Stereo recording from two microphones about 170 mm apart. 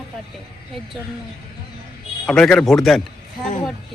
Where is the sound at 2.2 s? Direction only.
5° left (ahead or behind).